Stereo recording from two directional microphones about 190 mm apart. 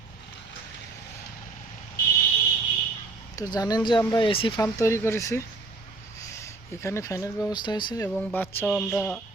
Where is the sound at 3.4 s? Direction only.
20° left (ahead or behind).